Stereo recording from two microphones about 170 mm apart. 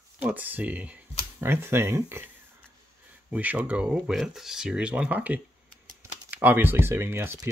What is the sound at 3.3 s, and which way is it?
Speech, 10° right (ahead or behind).